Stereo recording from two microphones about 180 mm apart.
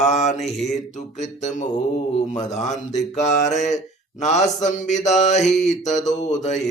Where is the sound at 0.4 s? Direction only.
Centre (ahead or behind).